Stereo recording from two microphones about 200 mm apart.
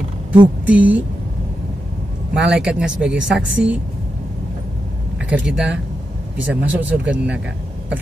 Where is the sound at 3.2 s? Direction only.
65° right (ahead or behind).